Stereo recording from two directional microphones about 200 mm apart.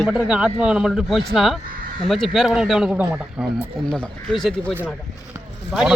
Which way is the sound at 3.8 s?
5° left (ahead or behind).